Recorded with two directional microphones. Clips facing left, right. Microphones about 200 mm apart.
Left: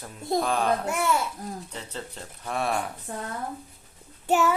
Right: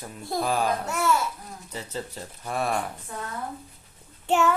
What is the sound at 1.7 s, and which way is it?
Speech, 5° right (ahead or behind).